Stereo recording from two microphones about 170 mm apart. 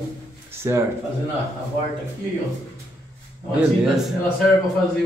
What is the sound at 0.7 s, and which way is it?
Speech, 15° right (ahead or behind).